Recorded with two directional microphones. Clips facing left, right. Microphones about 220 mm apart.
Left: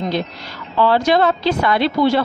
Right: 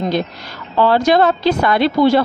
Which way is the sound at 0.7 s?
45° right (ahead or behind).